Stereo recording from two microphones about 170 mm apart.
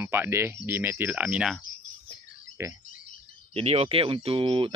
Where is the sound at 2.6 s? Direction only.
15° right (ahead or behind).